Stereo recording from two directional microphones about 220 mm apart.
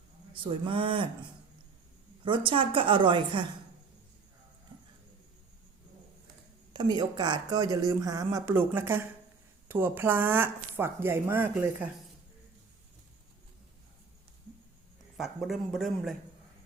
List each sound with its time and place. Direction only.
0.4 s a woman's voice: 25° right (ahead or behind)
2.2 s a woman's voice: 20° right (ahead or behind)
6.7 s speech: 20° right (ahead or behind)
15.2 s a man's voice: centre (ahead or behind)